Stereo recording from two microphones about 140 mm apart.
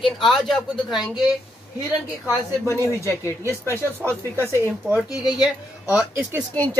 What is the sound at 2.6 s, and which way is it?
Speech, 20° left (ahead or behind).